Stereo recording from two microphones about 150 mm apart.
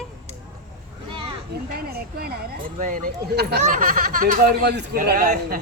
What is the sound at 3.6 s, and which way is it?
Speech, 55° right (ahead or behind).